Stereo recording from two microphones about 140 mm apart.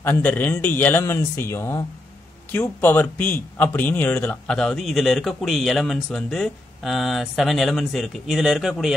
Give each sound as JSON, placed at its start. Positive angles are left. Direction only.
{"t": 0.0, "sound": "a man's voice", "side_deg": 15}